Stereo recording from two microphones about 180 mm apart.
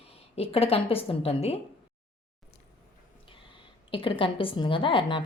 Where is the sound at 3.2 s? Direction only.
30° left (ahead or behind).